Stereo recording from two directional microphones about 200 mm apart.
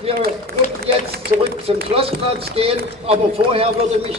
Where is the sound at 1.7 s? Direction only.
30° right (ahead or behind).